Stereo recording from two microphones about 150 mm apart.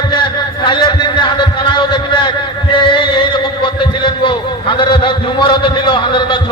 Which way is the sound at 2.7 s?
35° left (ahead or behind).